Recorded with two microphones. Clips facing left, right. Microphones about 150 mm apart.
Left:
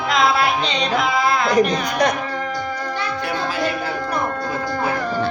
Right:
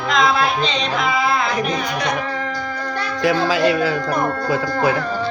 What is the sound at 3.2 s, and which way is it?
Speech, 90° right.